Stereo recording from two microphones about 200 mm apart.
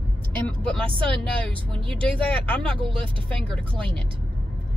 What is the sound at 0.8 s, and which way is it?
Speech, 25° right (ahead or behind).